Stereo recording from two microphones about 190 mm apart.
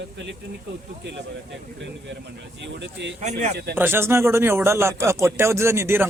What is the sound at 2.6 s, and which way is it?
Speech, 70° right (ahead or behind).